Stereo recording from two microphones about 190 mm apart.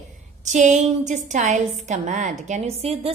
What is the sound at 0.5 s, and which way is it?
A woman's voice, 40° right (ahead or behind).